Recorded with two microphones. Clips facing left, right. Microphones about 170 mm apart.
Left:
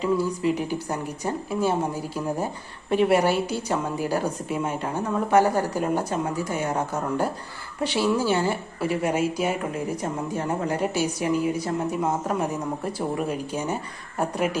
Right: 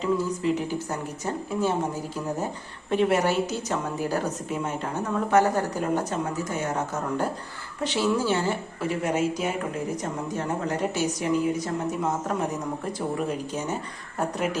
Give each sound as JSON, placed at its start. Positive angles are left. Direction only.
{"t": 0.0, "sound": "speech", "side_deg": 10}
{"t": 2.9, "sound": "speech", "side_deg": 10}